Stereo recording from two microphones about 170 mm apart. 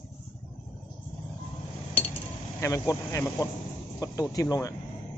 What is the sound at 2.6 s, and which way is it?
Speech, 20° left (ahead or behind).